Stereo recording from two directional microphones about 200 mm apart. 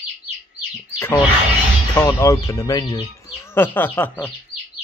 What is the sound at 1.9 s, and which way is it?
Speech, 15° left (ahead or behind).